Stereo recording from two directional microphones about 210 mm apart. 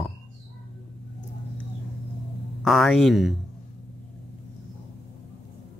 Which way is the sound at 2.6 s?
Centre (ahead or behind).